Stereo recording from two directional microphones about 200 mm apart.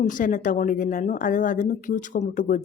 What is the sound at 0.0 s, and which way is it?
Speech, 40° left (ahead or behind).